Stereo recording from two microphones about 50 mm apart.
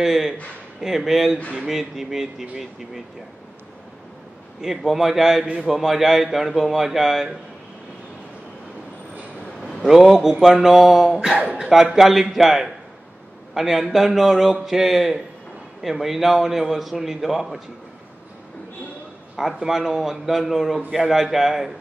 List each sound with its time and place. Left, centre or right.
0.0 s a man's voice: centre
1.4 s speech: centre
1.7 s speech: centre
4.6 s a man's voice: centre
9.8 s a man's voice: centre
11.3 s a man's voice: right
11.7 s a man's voice: centre
19.3 s a man's voice: centre